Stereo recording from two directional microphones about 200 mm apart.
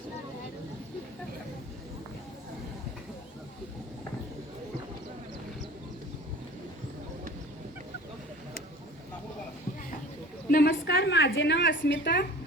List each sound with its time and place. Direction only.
10.5 s a woman's voice: 50° left (ahead or behind)